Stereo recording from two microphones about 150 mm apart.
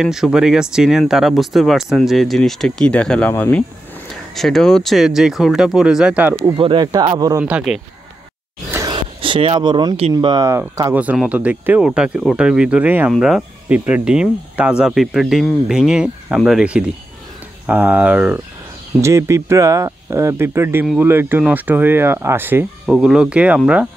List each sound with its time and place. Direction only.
0.0 s speech: 5° right (ahead or behind)
6.4 s speech: 30° right (ahead or behind)
7.4 s speech: 5° right (ahead or behind)
8.7 s a sound: 30° right (ahead or behind)
10.1 s speech: 25° right (ahead or behind); by 18.4 s 10° right (ahead or behind)
18.9 s speech: 20° right (ahead or behind)
22.8 s speech: centre (ahead or behind)